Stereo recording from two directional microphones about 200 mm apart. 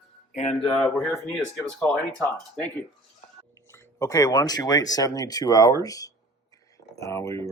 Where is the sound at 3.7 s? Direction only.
15° left (ahead or behind).